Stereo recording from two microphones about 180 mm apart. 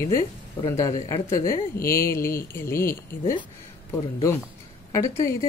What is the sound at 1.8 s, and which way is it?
Speech, 55° left (ahead or behind).